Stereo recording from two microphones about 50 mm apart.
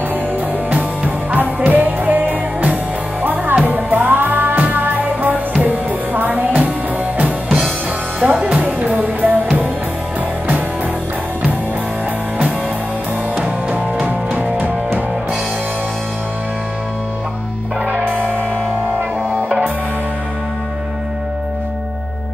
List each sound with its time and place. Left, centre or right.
0.7 s music: right
8.2 s music: right
13.4 s music: right